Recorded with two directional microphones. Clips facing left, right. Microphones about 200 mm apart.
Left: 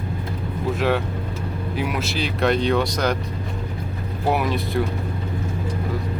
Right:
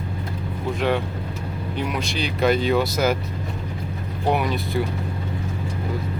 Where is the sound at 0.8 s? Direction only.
Centre (ahead or behind).